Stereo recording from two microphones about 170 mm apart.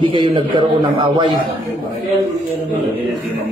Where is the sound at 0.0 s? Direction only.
30° right (ahead or behind).